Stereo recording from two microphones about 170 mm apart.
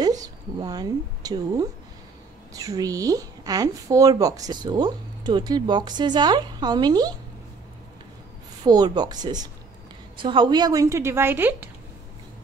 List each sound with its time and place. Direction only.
0.2 s a woman's voice: 20° right (ahead or behind)
8.6 s a woman's voice: 25° right (ahead or behind)